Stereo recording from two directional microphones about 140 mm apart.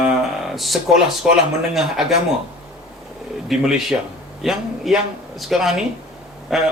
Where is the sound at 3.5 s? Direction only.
5° right (ahead or behind).